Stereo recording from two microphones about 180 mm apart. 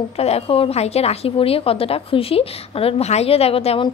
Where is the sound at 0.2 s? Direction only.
35° left (ahead or behind).